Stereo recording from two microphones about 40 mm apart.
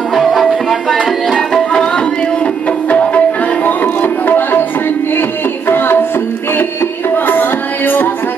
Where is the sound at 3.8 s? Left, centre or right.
Left.